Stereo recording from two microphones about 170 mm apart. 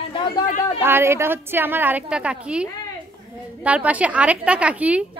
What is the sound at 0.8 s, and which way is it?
A woman's voice, 15° right (ahead or behind).